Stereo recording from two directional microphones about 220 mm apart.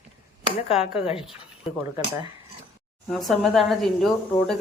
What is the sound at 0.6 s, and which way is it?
Speech, 25° left (ahead or behind).